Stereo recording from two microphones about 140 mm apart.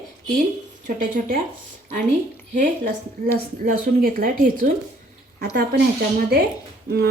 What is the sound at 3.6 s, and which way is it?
Speech, 85° right.